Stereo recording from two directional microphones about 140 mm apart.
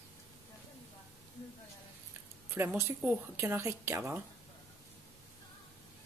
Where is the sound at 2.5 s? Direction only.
15° right (ahead or behind).